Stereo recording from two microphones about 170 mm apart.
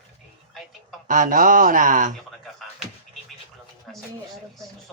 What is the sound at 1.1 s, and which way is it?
Speech, 50° right (ahead or behind).